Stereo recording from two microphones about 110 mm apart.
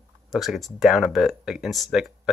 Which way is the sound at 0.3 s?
Centre (ahead or behind).